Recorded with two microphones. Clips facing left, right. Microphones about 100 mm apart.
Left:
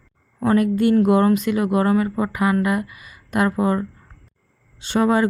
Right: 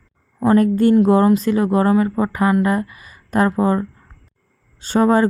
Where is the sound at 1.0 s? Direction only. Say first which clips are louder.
Right 2 dB; 25° right (ahead or behind).